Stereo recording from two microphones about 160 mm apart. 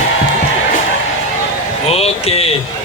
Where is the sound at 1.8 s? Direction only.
40° left (ahead or behind).